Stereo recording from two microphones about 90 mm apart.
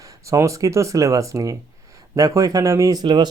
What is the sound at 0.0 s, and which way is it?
Speech, 40° right (ahead or behind).